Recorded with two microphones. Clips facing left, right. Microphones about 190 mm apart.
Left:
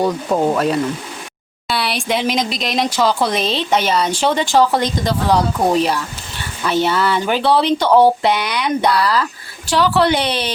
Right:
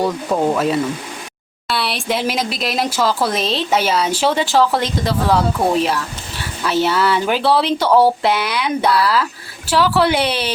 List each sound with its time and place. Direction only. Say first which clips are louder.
0.0 s speech: left 1 dB; 5° left (ahead or behind)